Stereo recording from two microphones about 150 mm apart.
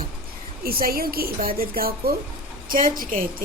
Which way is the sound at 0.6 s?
80° right.